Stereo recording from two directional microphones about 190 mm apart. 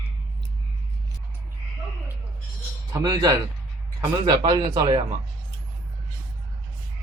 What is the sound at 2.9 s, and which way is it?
A man's voice, 20° right (ahead or behind).